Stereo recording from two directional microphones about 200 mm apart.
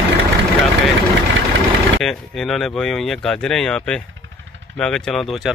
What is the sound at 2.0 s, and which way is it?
Speech, centre (ahead or behind).